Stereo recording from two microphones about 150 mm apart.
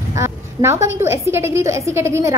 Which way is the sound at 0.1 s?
20° right (ahead or behind).